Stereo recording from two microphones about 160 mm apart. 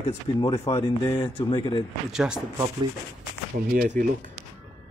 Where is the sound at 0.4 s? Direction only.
30° left (ahead or behind).